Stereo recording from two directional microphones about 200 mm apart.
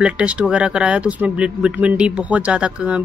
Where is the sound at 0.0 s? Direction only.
5° right (ahead or behind).